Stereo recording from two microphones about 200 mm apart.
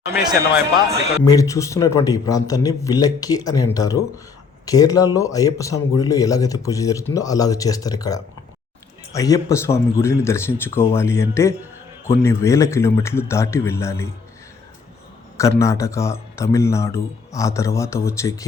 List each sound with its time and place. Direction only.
1.2 s a man's voice: 15° left (ahead or behind)
15.4 s a man's voice: 15° left (ahead or behind)